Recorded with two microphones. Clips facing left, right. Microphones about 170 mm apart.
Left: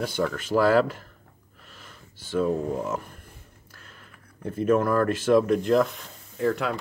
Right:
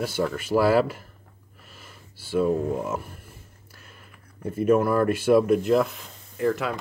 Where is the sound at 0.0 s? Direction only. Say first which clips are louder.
Right 1 dB; 5° right (ahead or behind).